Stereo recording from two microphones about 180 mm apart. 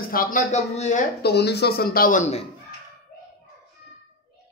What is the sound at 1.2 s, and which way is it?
A man's voice, 65° left (ahead or behind).